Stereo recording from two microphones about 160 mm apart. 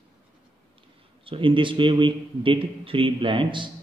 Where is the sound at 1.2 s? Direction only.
35° right (ahead or behind).